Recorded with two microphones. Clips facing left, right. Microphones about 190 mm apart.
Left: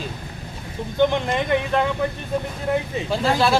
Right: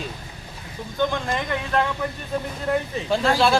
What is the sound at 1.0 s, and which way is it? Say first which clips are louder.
Speech: left 4 dB; 20° left (ahead or behind).